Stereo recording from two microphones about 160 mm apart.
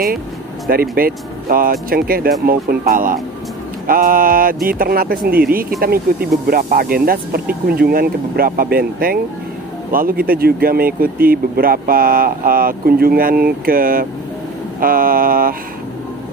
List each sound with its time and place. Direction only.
0.7 s speech: 65° right (ahead or behind)